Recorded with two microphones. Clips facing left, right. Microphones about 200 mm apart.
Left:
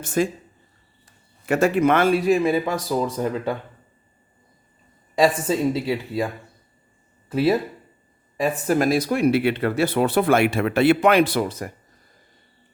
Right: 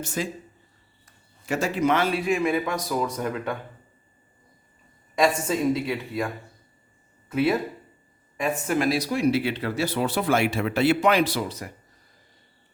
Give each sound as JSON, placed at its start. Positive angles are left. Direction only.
{"t": 0.0, "sound": "speech", "side_deg": 50}
{"t": 1.5, "sound": "a man's voice", "side_deg": 60}
{"t": 5.1, "sound": "a man's voice", "side_deg": 30}
{"t": 7.3, "sound": "speech", "side_deg": 30}